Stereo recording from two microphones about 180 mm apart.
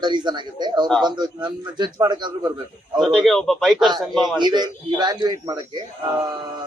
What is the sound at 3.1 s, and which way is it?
A man's voice, centre (ahead or behind).